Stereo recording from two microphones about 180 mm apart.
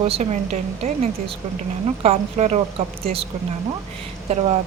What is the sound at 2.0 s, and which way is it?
A woman's voice, 35° right (ahead or behind).